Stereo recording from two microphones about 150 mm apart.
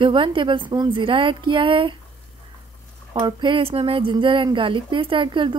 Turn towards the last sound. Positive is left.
turn(degrees=-35)  # may be behind; listen again after turning